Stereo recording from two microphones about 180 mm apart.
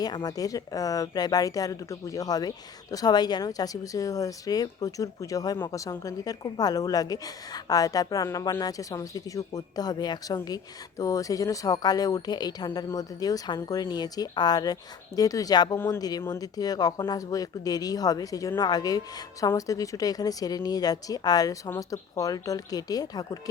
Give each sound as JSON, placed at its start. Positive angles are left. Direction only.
{"t": 0.0, "sound": "speech", "side_deg": 20}